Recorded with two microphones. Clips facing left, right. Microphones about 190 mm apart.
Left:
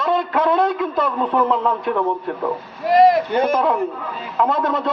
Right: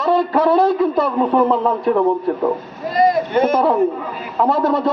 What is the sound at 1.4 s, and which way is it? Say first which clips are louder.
A man's voice: right 4 dB; 30° right (ahead or behind).